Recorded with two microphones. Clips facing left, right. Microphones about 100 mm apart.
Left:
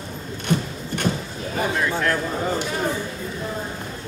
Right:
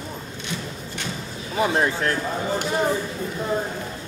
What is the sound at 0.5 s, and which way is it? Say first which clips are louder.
Horse: left 10 dB; 50° left (ahead or behind).